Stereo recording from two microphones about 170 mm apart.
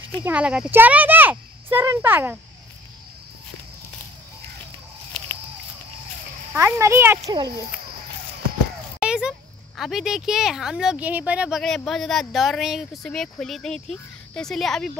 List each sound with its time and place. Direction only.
0.2 s speech: 5° right (ahead or behind)
6.5 s speech: 15° right (ahead or behind)
9.0 s a sound: 5° right (ahead or behind)
9.8 s speech: centre (ahead or behind)